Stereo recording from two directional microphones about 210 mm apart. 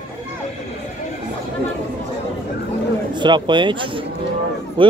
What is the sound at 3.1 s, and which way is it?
A man's voice, 20° right (ahead or behind).